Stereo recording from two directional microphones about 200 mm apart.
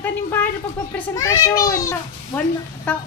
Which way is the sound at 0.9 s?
10° left (ahead or behind).